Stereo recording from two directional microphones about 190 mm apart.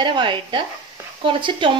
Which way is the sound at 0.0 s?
25° right (ahead or behind).